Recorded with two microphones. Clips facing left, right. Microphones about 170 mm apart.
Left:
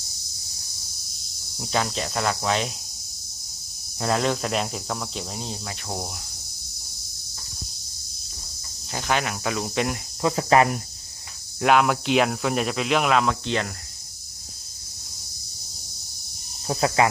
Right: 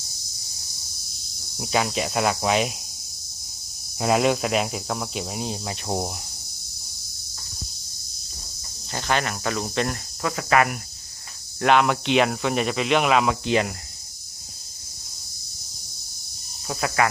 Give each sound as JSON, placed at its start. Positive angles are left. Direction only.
{"t": 1.5, "sound": "speech", "side_deg": -5}
{"t": 4.0, "sound": "speech", "side_deg": -10}
{"t": 8.9, "sound": "speech", "side_deg": 5}
{"t": 10.2, "sound": "speech", "side_deg": 30}
{"t": 11.6, "sound": "speech", "side_deg": 5}
{"t": 16.6, "sound": "speech", "side_deg": 25}